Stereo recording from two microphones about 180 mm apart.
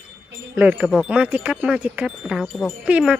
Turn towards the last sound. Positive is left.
turn(degrees=-5)  # may be behind; listen again after turning